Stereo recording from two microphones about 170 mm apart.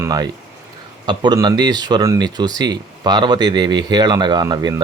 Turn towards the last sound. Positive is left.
turn(degrees=-25)  # may be behind; listen again after turning